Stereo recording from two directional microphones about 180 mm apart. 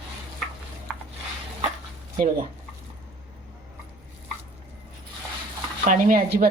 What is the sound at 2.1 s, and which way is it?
Speech, 50° right (ahead or behind).